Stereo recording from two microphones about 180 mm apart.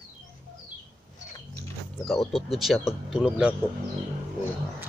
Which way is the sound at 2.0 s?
Centre (ahead or behind).